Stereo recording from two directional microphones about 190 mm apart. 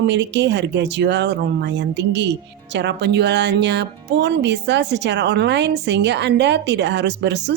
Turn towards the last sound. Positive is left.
turn(degrees=-65)  # may be behind; listen again after turning